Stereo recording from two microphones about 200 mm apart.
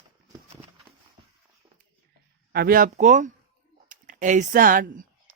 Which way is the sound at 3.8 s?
40° right (ahead or behind).